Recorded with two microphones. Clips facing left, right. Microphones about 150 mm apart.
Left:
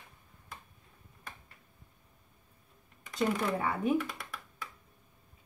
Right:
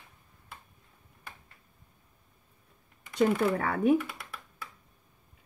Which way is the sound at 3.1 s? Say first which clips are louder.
Right 5 dB; 75° right (ahead or behind).